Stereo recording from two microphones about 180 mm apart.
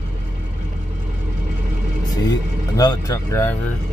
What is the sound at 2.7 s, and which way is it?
Speech, 20° left (ahead or behind).